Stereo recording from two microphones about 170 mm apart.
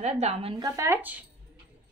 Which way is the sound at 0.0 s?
40° right (ahead or behind).